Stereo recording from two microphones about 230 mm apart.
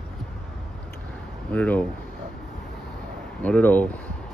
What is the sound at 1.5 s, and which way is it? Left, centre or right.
Speech, centre.